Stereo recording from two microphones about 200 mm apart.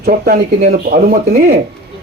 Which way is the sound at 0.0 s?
45° right (ahead or behind).